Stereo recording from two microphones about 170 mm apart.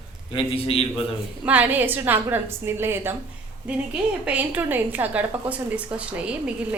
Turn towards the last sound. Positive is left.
turn(degrees=-5)  # may be behind; listen again after turning